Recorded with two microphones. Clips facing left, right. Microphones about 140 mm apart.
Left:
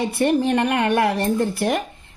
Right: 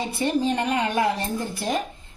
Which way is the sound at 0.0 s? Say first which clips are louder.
Left 4 dB; 65° left (ahead or behind).